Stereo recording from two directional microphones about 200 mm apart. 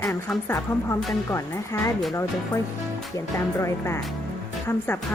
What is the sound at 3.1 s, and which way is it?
Speech, 15° left (ahead or behind).